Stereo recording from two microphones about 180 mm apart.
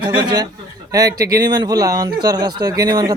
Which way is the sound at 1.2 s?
55° right (ahead or behind).